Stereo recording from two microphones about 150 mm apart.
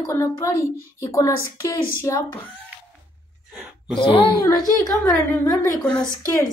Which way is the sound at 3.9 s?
35° left (ahead or behind).